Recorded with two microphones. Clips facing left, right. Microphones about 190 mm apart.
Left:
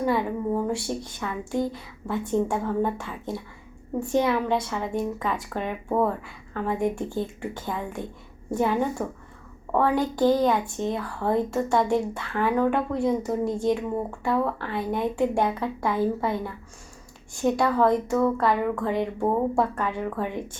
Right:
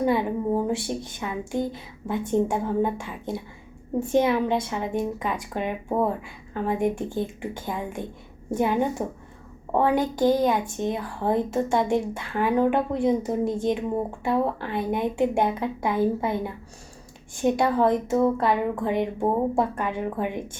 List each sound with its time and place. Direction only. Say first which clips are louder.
0.0 s a woman's voice: right 2 dB; 20° right (ahead or behind)